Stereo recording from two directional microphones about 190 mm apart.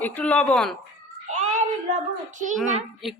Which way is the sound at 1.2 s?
40° right (ahead or behind).